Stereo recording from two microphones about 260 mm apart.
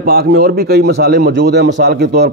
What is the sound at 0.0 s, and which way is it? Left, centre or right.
A man's voice, right.